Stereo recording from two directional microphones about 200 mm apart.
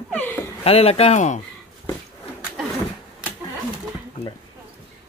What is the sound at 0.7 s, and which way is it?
Speech, 30° left (ahead or behind).